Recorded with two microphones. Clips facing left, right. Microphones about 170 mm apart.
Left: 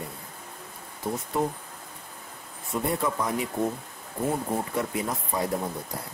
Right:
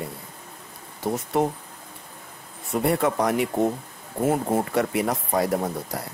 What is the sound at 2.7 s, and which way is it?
Speech, 70° right (ahead or behind).